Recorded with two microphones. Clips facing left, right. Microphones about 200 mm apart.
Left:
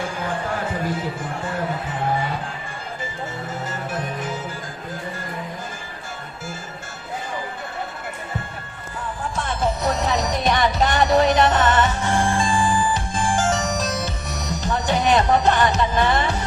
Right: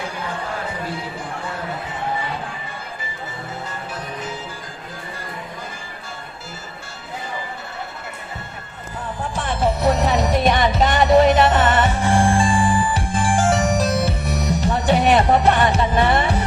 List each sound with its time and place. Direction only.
9.3 s music: 30° right (ahead or behind)